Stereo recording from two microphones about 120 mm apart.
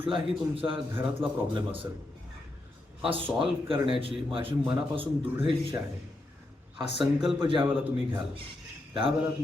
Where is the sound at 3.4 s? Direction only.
50° right (ahead or behind).